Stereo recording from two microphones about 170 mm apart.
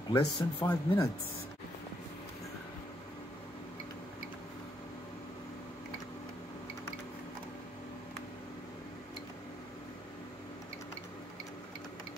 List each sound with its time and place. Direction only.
0.1 s speech: 25° left (ahead or behind)